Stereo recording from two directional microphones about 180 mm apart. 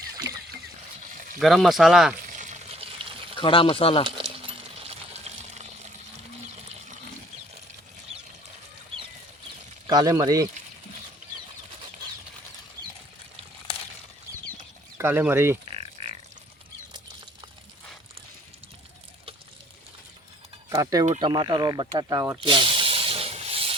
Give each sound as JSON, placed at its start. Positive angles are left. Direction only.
{"t": 1.4, "sound": "speech", "side_deg": 0}
{"t": 2.3, "sound": "water", "side_deg": -45}
{"t": 3.3, "sound": "speech", "side_deg": 30}
{"t": 4.2, "sound": "a sound", "side_deg": -30}
{"t": 9.8, "sound": "speech", "side_deg": -20}
{"t": 14.9, "sound": "speech", "side_deg": -10}
{"t": 15.7, "sound": "grunt", "side_deg": -35}
{"t": 20.7, "sound": "speech", "side_deg": -20}
{"t": 21.0, "sound": "speech", "side_deg": -30}
{"t": 22.4, "sound": "snake", "side_deg": -30}